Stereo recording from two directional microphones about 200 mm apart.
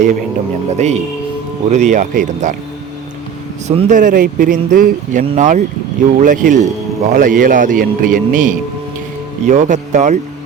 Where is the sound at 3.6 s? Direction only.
35° right (ahead or behind).